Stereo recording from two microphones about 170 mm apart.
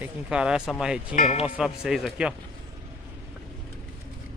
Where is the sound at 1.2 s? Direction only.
35° left (ahead or behind).